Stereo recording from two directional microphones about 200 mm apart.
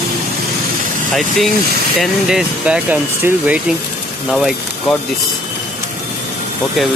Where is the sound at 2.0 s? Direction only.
5° right (ahead or behind).